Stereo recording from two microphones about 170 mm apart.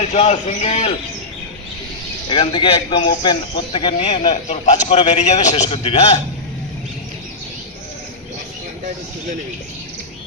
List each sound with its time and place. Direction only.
0.0 s a man's voice: 40° left (ahead or behind)
2.3 s a man's voice: 30° left (ahead or behind)
5.6 s a man's voice: 30° left (ahead or behind)